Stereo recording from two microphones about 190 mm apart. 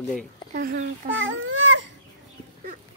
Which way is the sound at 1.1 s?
85° right.